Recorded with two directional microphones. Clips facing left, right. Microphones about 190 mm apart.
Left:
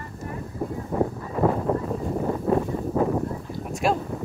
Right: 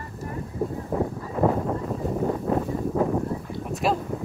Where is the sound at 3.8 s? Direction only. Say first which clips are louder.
Left 1 dB; centre (ahead or behind).